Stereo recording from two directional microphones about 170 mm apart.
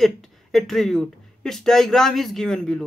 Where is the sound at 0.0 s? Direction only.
Centre (ahead or behind).